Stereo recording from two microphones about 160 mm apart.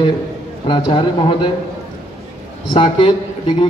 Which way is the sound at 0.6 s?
30° left (ahead or behind).